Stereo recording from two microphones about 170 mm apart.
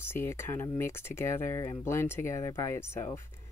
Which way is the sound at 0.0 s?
15° left (ahead or behind).